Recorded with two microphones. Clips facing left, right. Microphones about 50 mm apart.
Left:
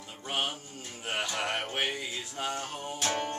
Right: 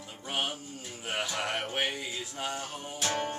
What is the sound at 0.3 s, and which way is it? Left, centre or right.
Music, centre.